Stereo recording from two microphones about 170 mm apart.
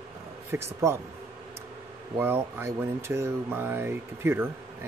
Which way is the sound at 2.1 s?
10° right (ahead or behind).